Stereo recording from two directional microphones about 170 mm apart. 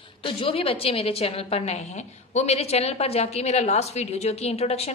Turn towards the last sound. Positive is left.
turn(degrees=35)  # may be behind; listen again after turning